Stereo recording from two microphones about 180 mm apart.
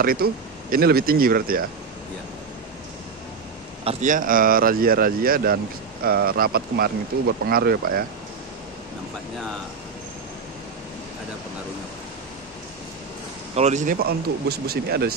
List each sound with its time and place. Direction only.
0.0 s speech: 55° right (ahead or behind)
3.8 s speech: 45° right (ahead or behind)
13.6 s a man's voice: 40° right (ahead or behind)
13.9 s speech: 60° right (ahead or behind)